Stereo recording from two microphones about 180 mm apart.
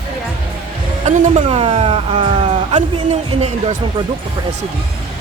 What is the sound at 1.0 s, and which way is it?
A woman's voice, 40° right (ahead or behind).